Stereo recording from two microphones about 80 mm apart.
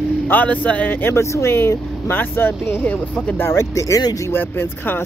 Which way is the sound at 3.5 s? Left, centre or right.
Left.